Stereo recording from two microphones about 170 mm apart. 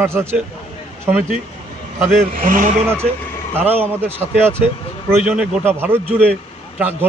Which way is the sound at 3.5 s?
10° right (ahead or behind).